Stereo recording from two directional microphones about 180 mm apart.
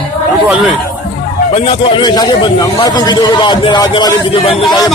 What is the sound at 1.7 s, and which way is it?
A man's voice, 30° left (ahead or behind).